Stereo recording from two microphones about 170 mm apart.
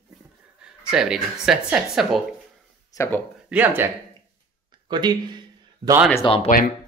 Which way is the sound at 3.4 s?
10° right (ahead or behind).